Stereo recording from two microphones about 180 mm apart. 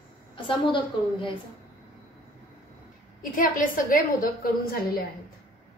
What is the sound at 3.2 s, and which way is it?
A woman's voice, 50° left (ahead or behind).